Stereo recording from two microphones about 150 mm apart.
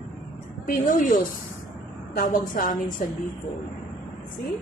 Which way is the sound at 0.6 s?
60° left (ahead or behind).